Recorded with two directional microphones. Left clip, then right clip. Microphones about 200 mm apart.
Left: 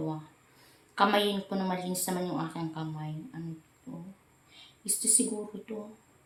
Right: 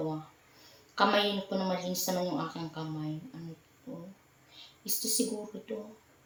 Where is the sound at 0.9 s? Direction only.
30° left (ahead or behind).